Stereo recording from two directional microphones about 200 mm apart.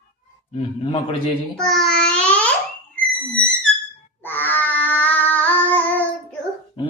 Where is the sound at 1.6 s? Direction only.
Centre (ahead or behind).